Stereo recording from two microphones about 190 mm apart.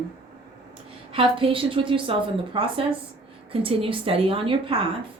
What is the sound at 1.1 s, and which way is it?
A woman's voice, 30° right (ahead or behind).